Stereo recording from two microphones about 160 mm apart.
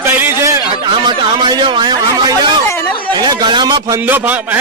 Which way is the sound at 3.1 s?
25° right (ahead or behind).